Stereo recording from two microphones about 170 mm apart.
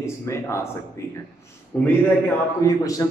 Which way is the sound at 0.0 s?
15° left (ahead or behind).